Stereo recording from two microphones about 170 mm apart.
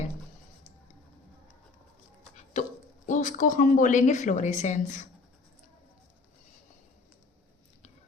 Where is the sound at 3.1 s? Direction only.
50° left (ahead or behind).